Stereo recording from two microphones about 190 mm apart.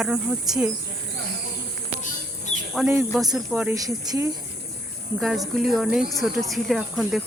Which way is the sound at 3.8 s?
20° right (ahead or behind).